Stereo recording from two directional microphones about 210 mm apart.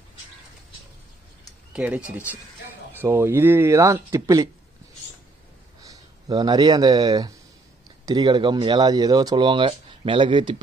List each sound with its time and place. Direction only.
1.7 s speech: 5° right (ahead or behind)
5.8 s speech: 15° right (ahead or behind)